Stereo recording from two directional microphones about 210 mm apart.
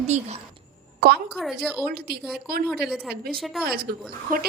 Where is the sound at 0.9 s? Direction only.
50° right (ahead or behind).